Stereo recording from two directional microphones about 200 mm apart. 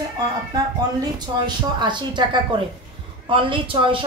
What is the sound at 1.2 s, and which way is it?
A woman's voice, 20° right (ahead or behind).